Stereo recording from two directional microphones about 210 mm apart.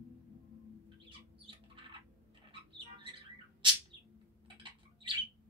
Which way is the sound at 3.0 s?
25° right (ahead or behind).